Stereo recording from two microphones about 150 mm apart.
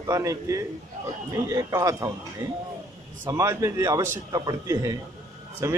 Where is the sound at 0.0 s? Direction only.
20° right (ahead or behind).